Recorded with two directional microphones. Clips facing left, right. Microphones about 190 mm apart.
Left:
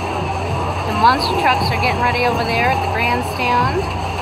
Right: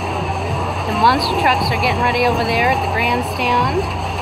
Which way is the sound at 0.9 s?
Centre (ahead or behind).